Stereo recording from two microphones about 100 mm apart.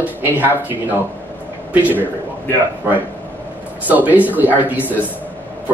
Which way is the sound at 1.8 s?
20° right (ahead or behind).